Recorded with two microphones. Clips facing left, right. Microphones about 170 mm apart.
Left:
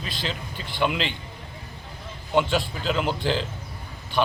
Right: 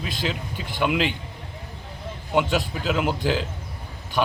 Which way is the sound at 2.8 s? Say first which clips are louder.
Right 1 dB; 5° right (ahead or behind).